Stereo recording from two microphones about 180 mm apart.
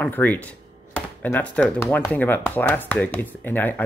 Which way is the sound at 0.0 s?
10° left (ahead or behind).